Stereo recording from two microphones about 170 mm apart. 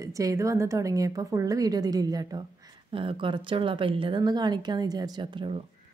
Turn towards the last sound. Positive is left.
turn(degrees=-30)  # may be behind; listen again after turning